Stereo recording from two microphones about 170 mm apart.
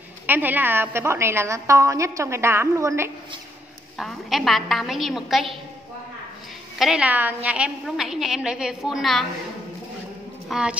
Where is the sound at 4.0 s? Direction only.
Centre (ahead or behind).